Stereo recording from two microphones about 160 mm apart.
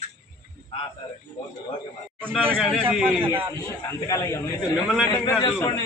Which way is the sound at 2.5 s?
5° left (ahead or behind).